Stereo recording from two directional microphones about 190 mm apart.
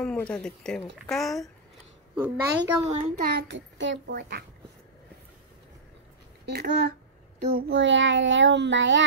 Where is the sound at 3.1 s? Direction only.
55° right (ahead or behind).